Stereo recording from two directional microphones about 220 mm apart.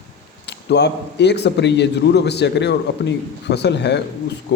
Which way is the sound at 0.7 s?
50° left (ahead or behind).